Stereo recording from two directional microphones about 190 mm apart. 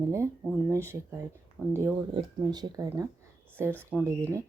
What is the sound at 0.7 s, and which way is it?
A woman's voice, 15° right (ahead or behind).